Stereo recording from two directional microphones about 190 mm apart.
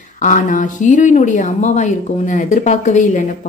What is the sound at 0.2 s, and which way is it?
A woman's voice, 40° left (ahead or behind).